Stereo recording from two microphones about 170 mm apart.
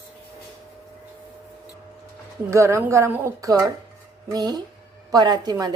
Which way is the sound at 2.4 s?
15° right (ahead or behind).